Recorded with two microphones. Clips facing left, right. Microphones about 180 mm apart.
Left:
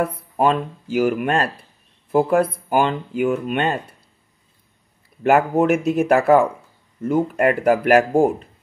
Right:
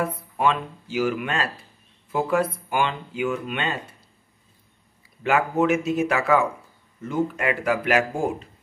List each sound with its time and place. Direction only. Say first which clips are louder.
0.0 s speech: left 4 dB; 45° left (ahead or behind)
5.2 s speech: left 5 dB; 55° left (ahead or behind)